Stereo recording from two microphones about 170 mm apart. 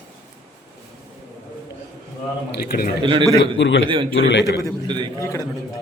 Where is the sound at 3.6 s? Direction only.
90° left.